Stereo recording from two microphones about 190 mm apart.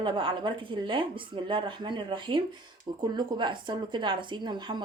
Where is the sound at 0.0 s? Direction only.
25° right (ahead or behind).